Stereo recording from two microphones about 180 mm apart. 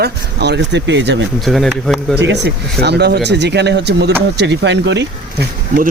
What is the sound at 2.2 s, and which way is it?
Speech, 70° right (ahead or behind).